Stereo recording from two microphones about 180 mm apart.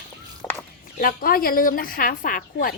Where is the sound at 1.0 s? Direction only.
55° left (ahead or behind).